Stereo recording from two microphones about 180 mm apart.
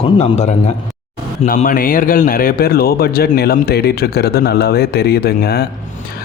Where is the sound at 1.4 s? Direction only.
50° left (ahead or behind).